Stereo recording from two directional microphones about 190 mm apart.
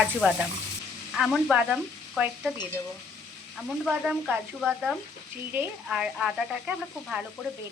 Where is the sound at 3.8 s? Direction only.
5° right (ahead or behind).